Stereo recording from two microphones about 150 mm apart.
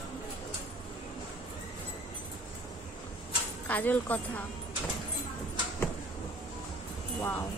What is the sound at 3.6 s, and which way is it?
Speech, 10° left (ahead or behind).